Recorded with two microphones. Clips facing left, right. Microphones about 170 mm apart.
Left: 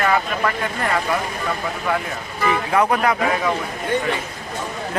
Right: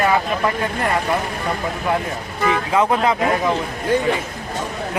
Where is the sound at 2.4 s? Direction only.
20° right (ahead or behind).